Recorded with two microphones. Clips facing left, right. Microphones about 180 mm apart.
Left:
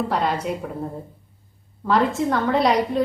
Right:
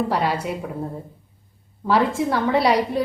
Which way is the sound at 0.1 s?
5° right (ahead or behind).